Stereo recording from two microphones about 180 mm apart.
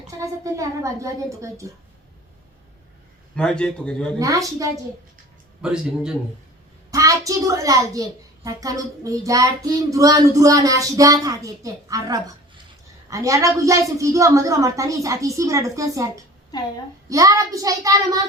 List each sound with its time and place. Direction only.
0.2 s a woman's voice: 15° right (ahead or behind)
3.3 s a man's voice: 5° left (ahead or behind)
4.2 s speech: 20° right (ahead or behind)
5.6 s a man's voice: 5° right (ahead or behind)
6.9 s a woman's voice: 20° right (ahead or behind)